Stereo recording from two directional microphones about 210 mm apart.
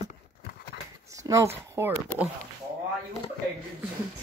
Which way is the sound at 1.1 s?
15° right (ahead or behind).